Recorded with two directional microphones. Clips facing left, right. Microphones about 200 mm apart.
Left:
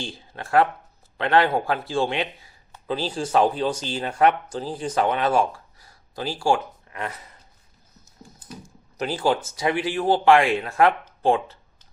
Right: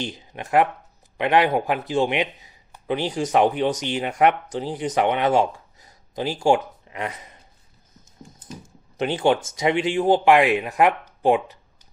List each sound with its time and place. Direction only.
0.0 s speech: 20° right (ahead or behind)
9.0 s speech: 25° right (ahead or behind)